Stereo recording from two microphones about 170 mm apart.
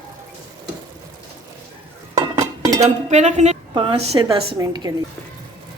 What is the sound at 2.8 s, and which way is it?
A woman's voice, 40° right (ahead or behind).